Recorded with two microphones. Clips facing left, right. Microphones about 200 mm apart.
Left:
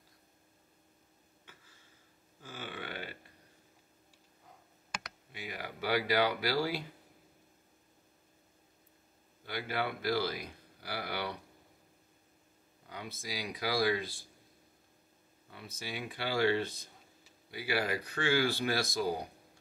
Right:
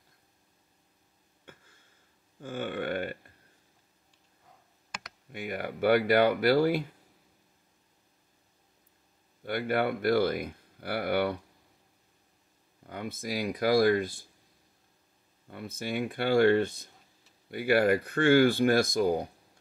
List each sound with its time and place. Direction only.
1.4 s a sound: 55° right (ahead or behind)
2.4 s speech: 55° right (ahead or behind)
5.3 s speech: 55° right (ahead or behind)
9.4 s speech: 50° right (ahead or behind)
12.8 s speech: 50° right (ahead or behind)
15.5 s speech: 55° right (ahead or behind)